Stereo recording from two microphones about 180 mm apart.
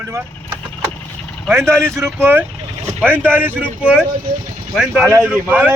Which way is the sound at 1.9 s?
15° right (ahead or behind).